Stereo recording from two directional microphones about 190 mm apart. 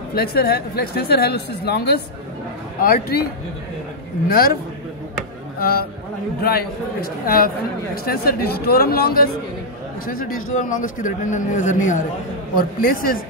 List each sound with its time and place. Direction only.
0.1 s speech: 55° left (ahead or behind)
4.3 s speech: 50° left (ahead or behind)
5.6 s speech: 50° left (ahead or behind)